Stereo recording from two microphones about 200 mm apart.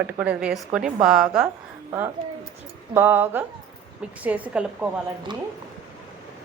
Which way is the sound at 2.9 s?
10° right (ahead or behind).